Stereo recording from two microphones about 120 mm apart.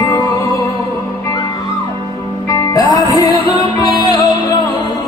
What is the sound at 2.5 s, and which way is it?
Music, 30° left (ahead or behind).